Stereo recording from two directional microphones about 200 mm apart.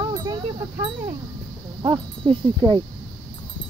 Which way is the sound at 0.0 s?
20° right (ahead or behind).